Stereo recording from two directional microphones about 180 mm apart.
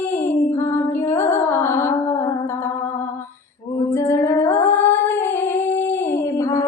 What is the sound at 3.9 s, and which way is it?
Music, 15° left (ahead or behind).